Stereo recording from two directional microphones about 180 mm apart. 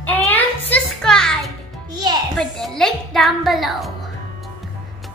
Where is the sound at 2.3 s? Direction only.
5° left (ahead or behind).